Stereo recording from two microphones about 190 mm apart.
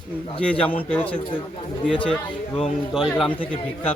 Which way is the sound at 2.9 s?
Centre (ahead or behind).